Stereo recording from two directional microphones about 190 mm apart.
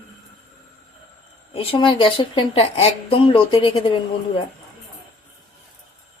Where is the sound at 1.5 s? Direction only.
30° left (ahead or behind).